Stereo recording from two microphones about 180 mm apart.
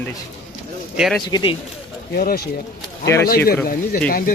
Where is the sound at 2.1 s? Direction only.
55° left (ahead or behind).